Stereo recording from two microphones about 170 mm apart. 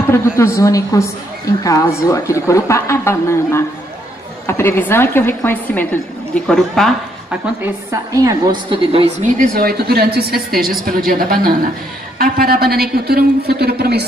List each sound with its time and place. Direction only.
0.0 s a woman's voice: 15° left (ahead or behind)
7.6 s a woman's voice: 20° right (ahead or behind)
9.4 s a man's voice: 65° right (ahead or behind)